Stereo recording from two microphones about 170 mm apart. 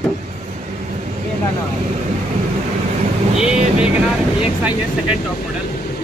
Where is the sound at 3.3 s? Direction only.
5° right (ahead or behind).